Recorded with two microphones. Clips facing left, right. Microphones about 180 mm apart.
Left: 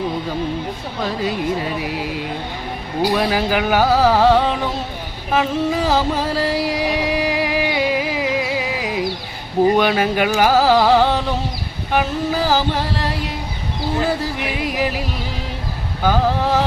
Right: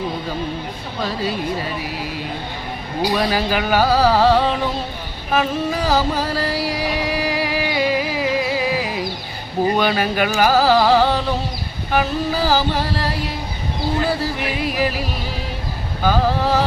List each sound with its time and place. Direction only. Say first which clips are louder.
3.2 s music: left 1 dB; 15° left (ahead or behind)
14.4 s speech: right 1 dB; 20° left (ahead or behind)
16.0 s music: even; 15° left (ahead or behind)